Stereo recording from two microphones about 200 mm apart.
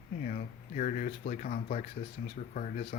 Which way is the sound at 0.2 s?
40° left (ahead or behind).